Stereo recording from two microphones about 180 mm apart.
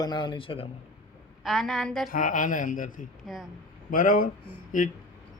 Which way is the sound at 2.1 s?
50° left (ahead or behind).